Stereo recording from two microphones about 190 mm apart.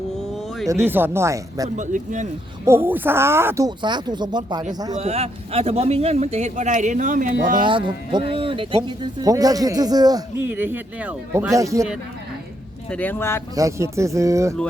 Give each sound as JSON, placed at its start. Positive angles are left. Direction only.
{"t": 0.7, "sound": "speech", "side_deg": -10}
{"t": 1.7, "sound": "speech", "side_deg": -40}
{"t": 2.6, "sound": "speech", "side_deg": -10}
{"t": 3.8, "sound": "speech", "side_deg": -25}
{"t": 4.9, "sound": "speech", "side_deg": -35}
{"t": 7.6, "sound": "speech", "side_deg": -25}
{"t": 12.9, "sound": "speech", "side_deg": 10}
{"t": 13.6, "sound": "speech", "side_deg": -15}